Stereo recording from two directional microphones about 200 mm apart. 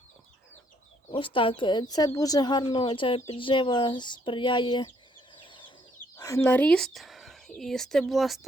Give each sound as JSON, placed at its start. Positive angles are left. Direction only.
{"t": 1.1, "sound": "speech", "side_deg": 25}
{"t": 5.4, "sound": "chicken", "side_deg": 25}
{"t": 6.1, "sound": "speech", "side_deg": 15}